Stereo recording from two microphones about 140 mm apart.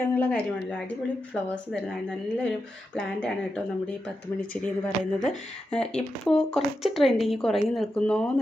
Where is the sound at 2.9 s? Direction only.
5° left (ahead or behind).